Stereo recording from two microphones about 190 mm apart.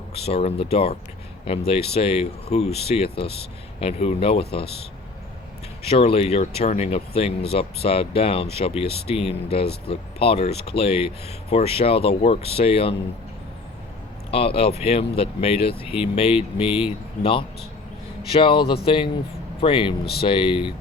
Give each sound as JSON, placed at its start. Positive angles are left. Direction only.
{"t": 0.1, "sound": "speech", "side_deg": 30}
{"t": 5.8, "sound": "speech", "side_deg": 30}
{"t": 14.3, "sound": "speech", "side_deg": 30}
{"t": 18.3, "sound": "speech", "side_deg": 25}